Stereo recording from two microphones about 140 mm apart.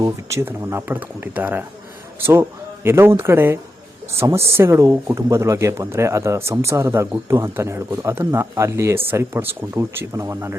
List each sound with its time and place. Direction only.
0.0 s speech: 20° right (ahead or behind)